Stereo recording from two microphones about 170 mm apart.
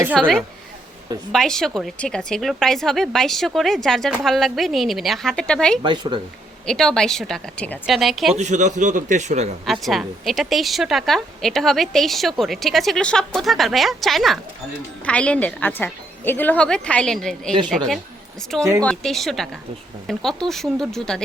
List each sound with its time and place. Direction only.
0.1 s a woman's voice: 5° left (ahead or behind)
5.8 s speech: 25° right (ahead or behind)
6.7 s a woman's voice: 5° left (ahead or behind)
8.4 s a man's voice: 45° right (ahead or behind)
9.6 s a woman's voice: centre (ahead or behind)